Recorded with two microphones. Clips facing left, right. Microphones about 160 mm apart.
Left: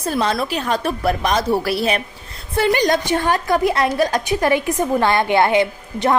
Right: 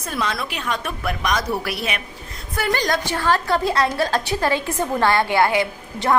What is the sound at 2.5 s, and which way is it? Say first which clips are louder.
A woman's voice: left 5 dB; 20° left (ahead or behind).